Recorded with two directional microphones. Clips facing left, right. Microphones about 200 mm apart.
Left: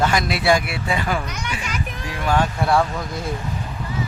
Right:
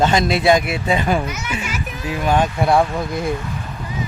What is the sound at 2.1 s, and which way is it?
Speech, 20° right (ahead or behind).